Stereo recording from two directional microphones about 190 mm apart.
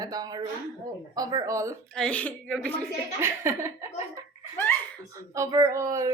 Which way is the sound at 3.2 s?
15° right (ahead or behind).